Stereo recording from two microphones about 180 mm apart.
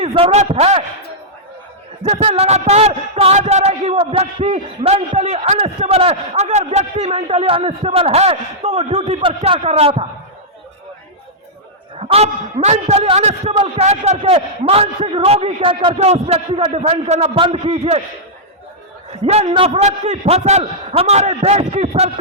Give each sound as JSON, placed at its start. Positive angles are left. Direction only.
{"t": 0.0, "sound": "speech", "side_deg": -30}
{"t": 2.0, "sound": "speech", "side_deg": -35}
{"t": 11.9, "sound": "speech", "side_deg": -35}
{"t": 19.2, "sound": "speech", "side_deg": -35}